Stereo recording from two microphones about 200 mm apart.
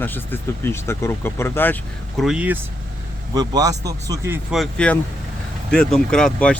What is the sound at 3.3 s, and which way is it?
Speech, 20° right (ahead or behind).